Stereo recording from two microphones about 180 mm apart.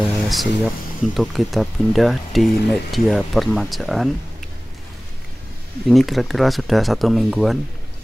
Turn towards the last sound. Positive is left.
turn(degrees=0)  # may be behind; listen again after turning